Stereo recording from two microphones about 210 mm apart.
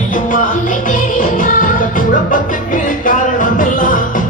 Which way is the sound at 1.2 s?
40° left (ahead or behind).